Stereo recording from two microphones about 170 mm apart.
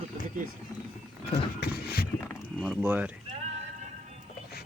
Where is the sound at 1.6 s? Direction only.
65° left (ahead or behind).